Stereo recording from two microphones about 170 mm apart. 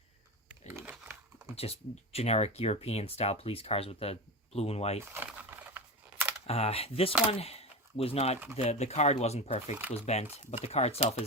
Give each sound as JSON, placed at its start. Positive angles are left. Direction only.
{"t": 0.7, "sound": "crumpling", "side_deg": -10}
{"t": 1.5, "sound": "speech", "side_deg": 35}
{"t": 5.1, "sound": "crumpling", "side_deg": -10}
{"t": 6.5, "sound": "speech", "side_deg": 35}